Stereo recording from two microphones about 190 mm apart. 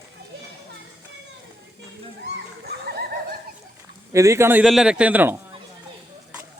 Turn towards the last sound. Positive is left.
turn(degrees=-10)  # may be behind; listen again after turning